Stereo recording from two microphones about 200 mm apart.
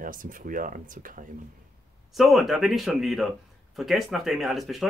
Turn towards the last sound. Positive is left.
turn(degrees=0)  # may be behind; listen again after turning